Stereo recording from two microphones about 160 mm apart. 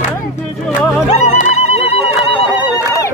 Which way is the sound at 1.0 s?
45° left (ahead or behind).